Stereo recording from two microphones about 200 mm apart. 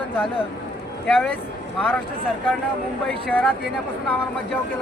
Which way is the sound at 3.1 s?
5° left (ahead or behind).